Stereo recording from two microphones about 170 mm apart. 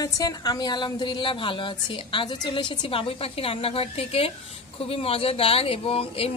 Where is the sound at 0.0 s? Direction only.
20° left (ahead or behind).